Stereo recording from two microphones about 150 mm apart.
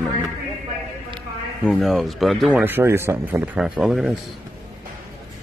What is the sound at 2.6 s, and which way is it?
Speech, 15° right (ahead or behind).